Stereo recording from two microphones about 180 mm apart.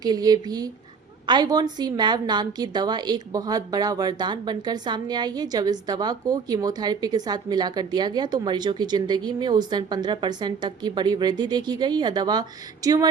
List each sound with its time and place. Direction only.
0.0 s a woman's voice: 20° right (ahead or behind)